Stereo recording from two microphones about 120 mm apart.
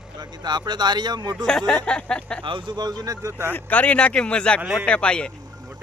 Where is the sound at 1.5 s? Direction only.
5° left (ahead or behind).